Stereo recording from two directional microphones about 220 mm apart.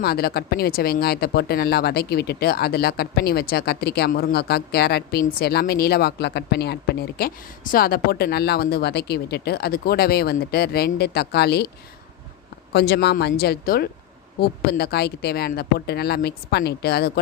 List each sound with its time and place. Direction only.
0.0 s speech: 45° left (ahead or behind)
12.7 s speech: 50° left (ahead or behind)